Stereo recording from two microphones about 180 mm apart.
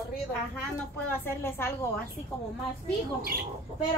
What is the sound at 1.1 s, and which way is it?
Speech, 15° left (ahead or behind).